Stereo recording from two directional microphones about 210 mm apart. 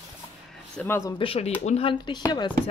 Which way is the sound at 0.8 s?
15° left (ahead or behind).